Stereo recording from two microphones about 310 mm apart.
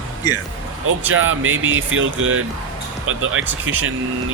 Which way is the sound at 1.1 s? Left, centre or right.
Right.